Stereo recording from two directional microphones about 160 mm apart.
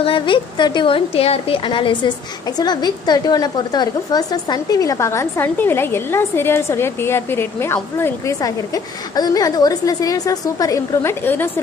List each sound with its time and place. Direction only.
0.0 s a woman's voice: 30° left (ahead or behind); by 11.5 s 15° left (ahead or behind)